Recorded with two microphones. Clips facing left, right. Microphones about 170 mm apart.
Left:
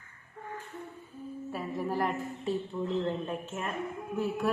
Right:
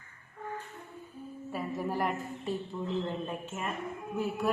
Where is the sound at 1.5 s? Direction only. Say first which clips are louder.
Even; centre (ahead or behind).